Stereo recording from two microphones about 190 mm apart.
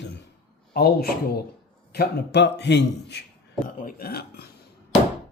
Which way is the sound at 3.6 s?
50° left (ahead or behind).